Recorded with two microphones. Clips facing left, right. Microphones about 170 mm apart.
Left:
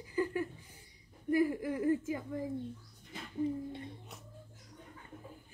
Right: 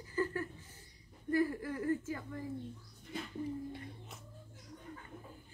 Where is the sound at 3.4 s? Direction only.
25° left (ahead or behind).